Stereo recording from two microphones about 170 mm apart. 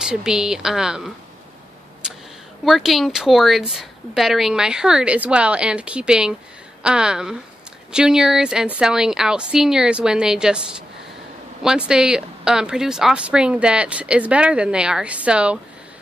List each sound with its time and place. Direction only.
0.0 s speech: 5° right (ahead or behind)
2.0 s a sound: 5° right (ahead or behind)
2.6 s speech: centre (ahead or behind)
11.6 s speech: 5° right (ahead or behind)